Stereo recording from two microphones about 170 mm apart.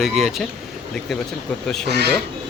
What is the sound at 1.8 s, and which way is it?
Speech, 80° right.